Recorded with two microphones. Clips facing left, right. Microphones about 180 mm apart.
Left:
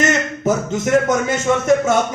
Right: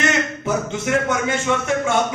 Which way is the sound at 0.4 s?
40° left (ahead or behind).